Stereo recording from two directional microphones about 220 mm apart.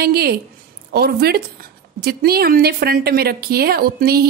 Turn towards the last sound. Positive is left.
turn(degrees=-45)  # may be behind; listen again after turning